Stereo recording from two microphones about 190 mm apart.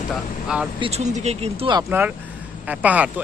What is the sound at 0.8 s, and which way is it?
Speech, 35° right (ahead or behind).